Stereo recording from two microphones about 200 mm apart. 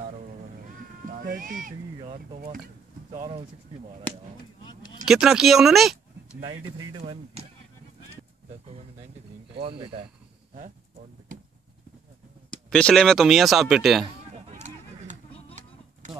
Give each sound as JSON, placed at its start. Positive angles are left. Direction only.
{"t": 1.1, "sound": "speech", "side_deg": -45}
{"t": 3.1, "sound": "speech", "side_deg": -30}
{"t": 5.0, "sound": "speech", "side_deg": 0}
{"t": 6.4, "sound": "speech", "side_deg": -20}
{"t": 9.6, "sound": "speech", "side_deg": -25}
{"t": 12.4, "sound": "speech", "side_deg": 5}